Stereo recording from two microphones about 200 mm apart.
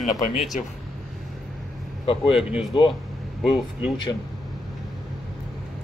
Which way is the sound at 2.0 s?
25° left (ahead or behind).